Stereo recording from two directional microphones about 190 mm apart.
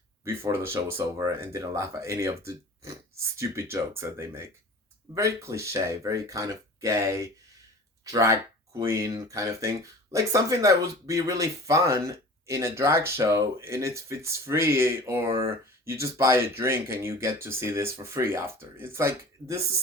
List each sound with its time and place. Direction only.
0.3 s speech: 15° right (ahead or behind)